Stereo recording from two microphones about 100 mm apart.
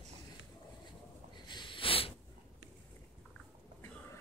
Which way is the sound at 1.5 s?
55° left (ahead or behind).